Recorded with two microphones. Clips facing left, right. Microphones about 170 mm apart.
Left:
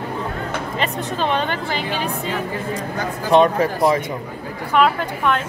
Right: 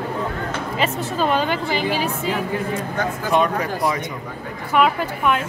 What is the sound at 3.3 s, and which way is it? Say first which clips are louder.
Speech: left 6 dB; 25° left (ahead or behind).